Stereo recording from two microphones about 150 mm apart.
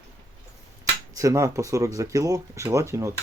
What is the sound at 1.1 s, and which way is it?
Speech, 20° right (ahead or behind).